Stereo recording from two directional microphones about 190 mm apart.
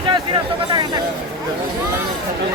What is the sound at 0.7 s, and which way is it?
Speech, 20° right (ahead or behind).